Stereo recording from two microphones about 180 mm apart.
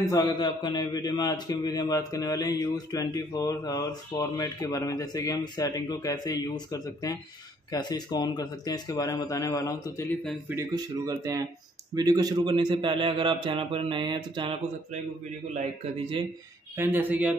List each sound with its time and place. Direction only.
0.0 s a man's voice: 25° left (ahead or behind)
10.5 s a man's voice: 15° right (ahead or behind)
16.7 s speech: 10° right (ahead or behind)